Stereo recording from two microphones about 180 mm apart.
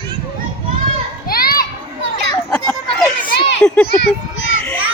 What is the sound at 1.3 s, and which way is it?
Children playing, 55° left (ahead or behind).